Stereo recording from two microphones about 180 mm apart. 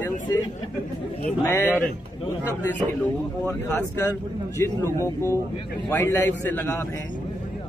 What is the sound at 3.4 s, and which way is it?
Speech, 10° left (ahead or behind).